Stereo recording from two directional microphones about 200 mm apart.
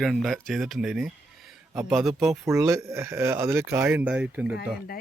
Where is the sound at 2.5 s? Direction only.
15° right (ahead or behind).